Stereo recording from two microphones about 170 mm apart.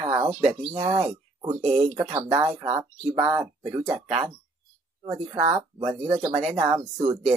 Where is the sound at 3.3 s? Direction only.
15° right (ahead or behind).